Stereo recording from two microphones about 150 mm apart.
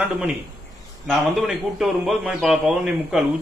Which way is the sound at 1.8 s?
Centre (ahead or behind).